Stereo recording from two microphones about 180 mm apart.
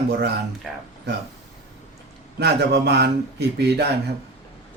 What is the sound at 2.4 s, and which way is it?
Speech, 70° right (ahead or behind).